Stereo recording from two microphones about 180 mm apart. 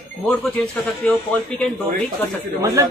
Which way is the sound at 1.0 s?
5° left (ahead or behind).